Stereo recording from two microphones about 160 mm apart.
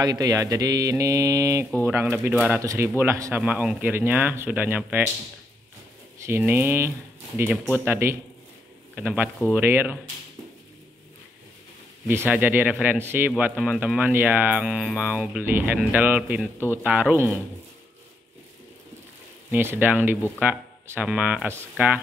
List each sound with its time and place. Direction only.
0.0 s mantra: 25° right (ahead or behind)
1.9 s speech: 15° right (ahead or behind)
6.2 s speech: 15° right (ahead or behind)
12.1 s speech: 15° right (ahead or behind)
19.5 s speech: 10° right (ahead or behind)